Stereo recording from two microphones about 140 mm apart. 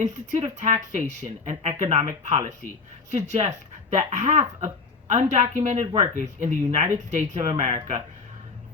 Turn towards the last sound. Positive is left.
turn(degrees=-55)  # may be behind; listen again after turning